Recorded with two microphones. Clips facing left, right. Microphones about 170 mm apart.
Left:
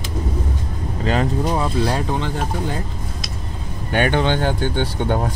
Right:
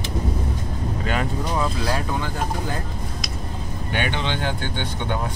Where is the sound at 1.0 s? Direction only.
30° left (ahead or behind).